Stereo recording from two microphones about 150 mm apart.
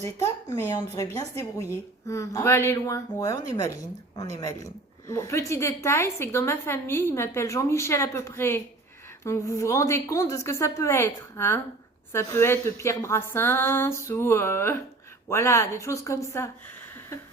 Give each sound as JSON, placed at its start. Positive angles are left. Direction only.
{"t": 0.0, "sound": "a woman's voice", "side_deg": 20}